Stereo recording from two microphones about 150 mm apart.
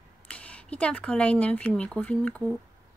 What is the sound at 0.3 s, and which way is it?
Speech, 10° left (ahead or behind).